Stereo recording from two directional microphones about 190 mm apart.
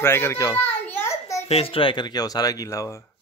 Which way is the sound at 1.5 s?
30° left (ahead or behind).